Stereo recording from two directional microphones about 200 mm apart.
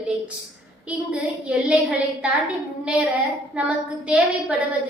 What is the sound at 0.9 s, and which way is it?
A woman's voice, 5° right (ahead or behind).